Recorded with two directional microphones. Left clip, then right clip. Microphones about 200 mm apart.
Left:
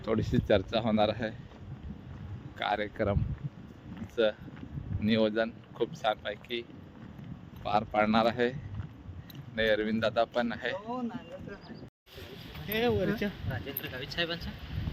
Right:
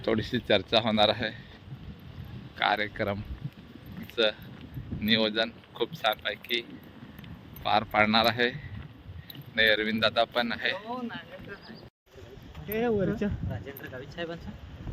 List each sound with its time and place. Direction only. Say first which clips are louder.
0.0 s speech: right 2 dB; centre (ahead or behind)
2.6 s a man's voice: right 4 dB; 5° right (ahead or behind)
12.7 s speech: right 1 dB; 45° right (ahead or behind)
13.5 s speech: left 1 dB; 30° right (ahead or behind)